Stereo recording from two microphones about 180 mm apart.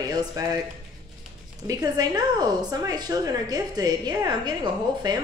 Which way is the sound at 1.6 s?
20° right (ahead or behind).